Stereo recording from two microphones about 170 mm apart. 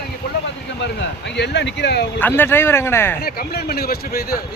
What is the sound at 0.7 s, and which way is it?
Speech, 90° left.